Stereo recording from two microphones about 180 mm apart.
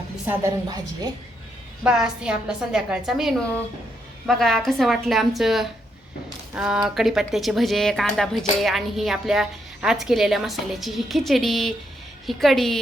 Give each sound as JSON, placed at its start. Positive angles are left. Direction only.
{"t": 0.3, "sound": "a woman's voice", "side_deg": -20}
{"t": 1.8, "sound": "a woman's voice", "side_deg": -5}